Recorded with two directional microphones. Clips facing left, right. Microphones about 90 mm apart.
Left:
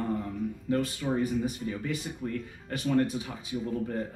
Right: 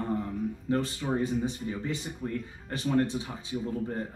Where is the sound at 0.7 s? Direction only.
25° right (ahead or behind).